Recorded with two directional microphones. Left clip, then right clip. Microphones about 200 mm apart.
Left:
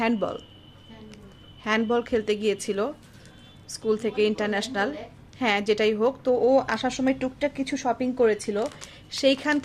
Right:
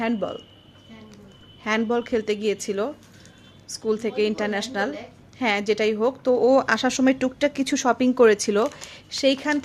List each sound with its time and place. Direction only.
0.0 s a woman's voice: 5° left (ahead or behind)
1.6 s a woman's voice: 5° right (ahead or behind)
6.3 s speech: 20° right (ahead or behind)
9.0 s a woman's voice: 5° right (ahead or behind)